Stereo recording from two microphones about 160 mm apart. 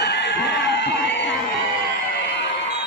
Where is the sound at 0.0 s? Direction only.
90° left.